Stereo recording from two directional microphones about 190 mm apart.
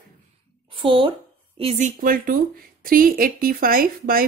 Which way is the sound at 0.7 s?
25° right (ahead or behind).